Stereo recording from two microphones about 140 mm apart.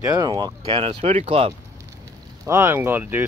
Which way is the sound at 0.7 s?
45° right (ahead or behind).